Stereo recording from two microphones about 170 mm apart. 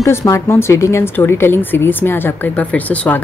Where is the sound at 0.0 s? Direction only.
20° left (ahead or behind).